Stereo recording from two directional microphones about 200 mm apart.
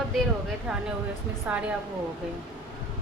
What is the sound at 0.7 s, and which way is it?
Speech, centre (ahead or behind).